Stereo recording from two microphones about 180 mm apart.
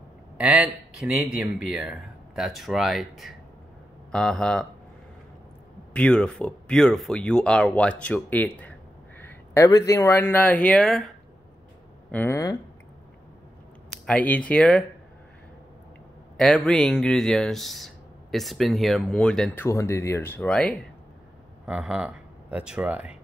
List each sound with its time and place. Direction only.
0.4 s speech: 5° right (ahead or behind)
5.9 s speech: 5° left (ahead or behind)
12.1 s speech: 15° left (ahead or behind)
14.0 s speech: 5° left (ahead or behind)
16.3 s speech: 5° left (ahead or behind)